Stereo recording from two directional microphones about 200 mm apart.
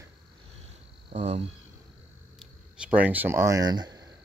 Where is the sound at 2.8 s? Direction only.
5° right (ahead or behind).